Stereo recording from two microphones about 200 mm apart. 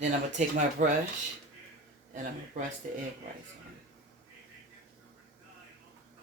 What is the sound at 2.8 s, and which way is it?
Speech, 45° right (ahead or behind).